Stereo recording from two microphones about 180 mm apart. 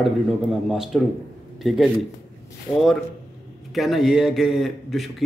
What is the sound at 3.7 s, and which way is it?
A man's voice, centre (ahead or behind).